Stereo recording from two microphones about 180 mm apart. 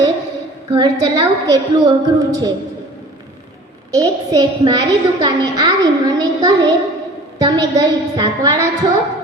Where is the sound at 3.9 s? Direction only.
20° right (ahead or behind).